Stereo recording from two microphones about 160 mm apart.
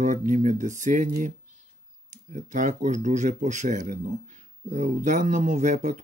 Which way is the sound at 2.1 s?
55° right (ahead or behind).